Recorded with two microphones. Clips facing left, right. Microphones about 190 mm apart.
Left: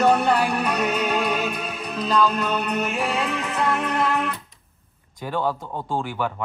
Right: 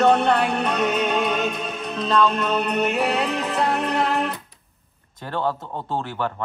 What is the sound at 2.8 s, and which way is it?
Music, 65° right (ahead or behind).